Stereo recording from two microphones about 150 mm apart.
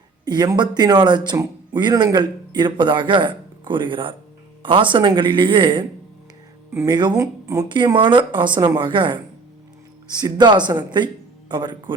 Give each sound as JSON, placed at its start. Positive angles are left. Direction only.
{"t": 0.3, "sound": "a man's voice", "side_deg": -30}